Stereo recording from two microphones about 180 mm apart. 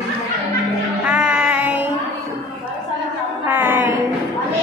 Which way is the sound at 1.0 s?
5° right (ahead or behind).